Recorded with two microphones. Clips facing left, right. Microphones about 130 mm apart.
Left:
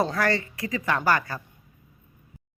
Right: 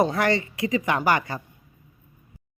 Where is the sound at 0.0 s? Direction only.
20° right (ahead or behind).